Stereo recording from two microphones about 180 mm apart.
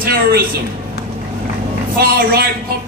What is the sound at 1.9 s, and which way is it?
Speech, 55° right (ahead or behind).